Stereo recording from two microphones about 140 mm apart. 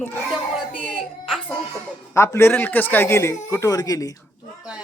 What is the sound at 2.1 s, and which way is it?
Speech, 20° left (ahead or behind).